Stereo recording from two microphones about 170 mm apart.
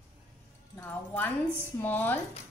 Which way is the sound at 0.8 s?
10° left (ahead or behind).